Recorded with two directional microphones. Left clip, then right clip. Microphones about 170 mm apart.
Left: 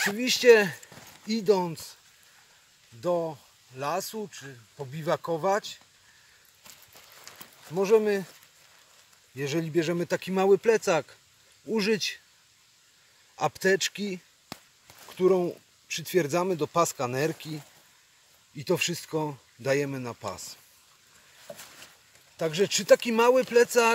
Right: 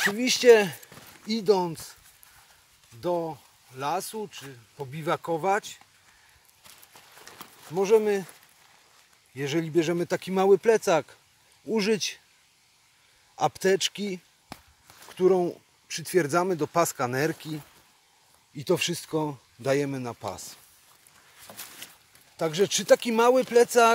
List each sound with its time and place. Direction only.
0.0 s speech: 20° right (ahead or behind)
3.0 s speech: 15° right (ahead or behind)
7.3 s a sound: 5° right (ahead or behind)
7.8 s speech: 15° right (ahead or behind)
9.3 s speech: 15° right (ahead or behind)
13.4 s speech: 15° right (ahead or behind)
14.5 s walk: 10° left (ahead or behind)
15.0 s speech: 10° right (ahead or behind)
22.4 s speech: 20° right (ahead or behind)